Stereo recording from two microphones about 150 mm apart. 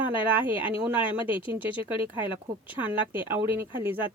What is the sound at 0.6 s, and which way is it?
Speech, 10° right (ahead or behind).